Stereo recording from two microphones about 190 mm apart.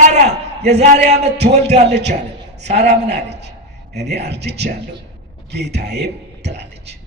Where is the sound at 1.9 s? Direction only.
65° right (ahead or behind).